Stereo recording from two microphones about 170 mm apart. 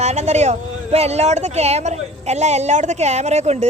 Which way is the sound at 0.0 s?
40° right (ahead or behind).